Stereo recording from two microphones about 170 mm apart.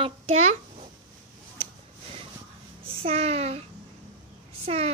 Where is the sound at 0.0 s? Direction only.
35° right (ahead or behind).